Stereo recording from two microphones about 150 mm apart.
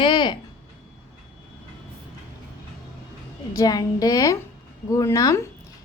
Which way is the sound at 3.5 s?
25° left (ahead or behind).